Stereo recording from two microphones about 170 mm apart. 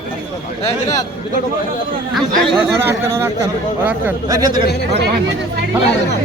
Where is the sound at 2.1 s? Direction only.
5° left (ahead or behind).